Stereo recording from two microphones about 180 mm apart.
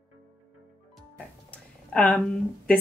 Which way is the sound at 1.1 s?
5° left (ahead or behind).